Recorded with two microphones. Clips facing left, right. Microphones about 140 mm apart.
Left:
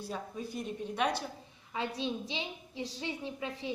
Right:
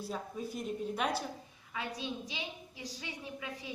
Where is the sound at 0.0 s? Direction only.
Centre (ahead or behind).